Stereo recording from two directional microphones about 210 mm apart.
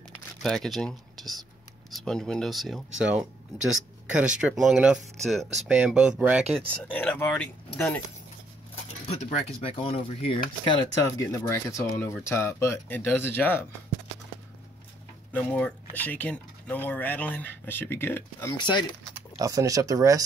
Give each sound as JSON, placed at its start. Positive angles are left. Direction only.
{"t": 0.4, "sound": "speech", "side_deg": 0}
{"t": 4.2, "sound": "speech", "side_deg": -5}
{"t": 6.7, "sound": "speech", "side_deg": 5}
{"t": 8.8, "sound": "speech", "side_deg": 30}
{"t": 15.3, "sound": "speech", "side_deg": 5}
{"t": 18.6, "sound": "speech", "side_deg": 20}
{"t": 19.1, "sound": "speech", "side_deg": -15}